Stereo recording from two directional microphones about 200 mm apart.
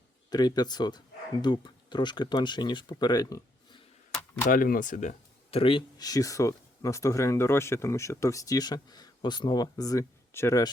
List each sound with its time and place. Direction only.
0.3 s speech: 20° left (ahead or behind)
4.5 s speech: 45° left (ahead or behind); by 10.7 s 15° left (ahead or behind)